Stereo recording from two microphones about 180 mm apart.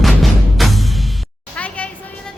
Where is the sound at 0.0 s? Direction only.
Centre (ahead or behind).